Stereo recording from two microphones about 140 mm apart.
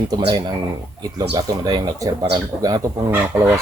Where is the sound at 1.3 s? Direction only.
30° right (ahead or behind).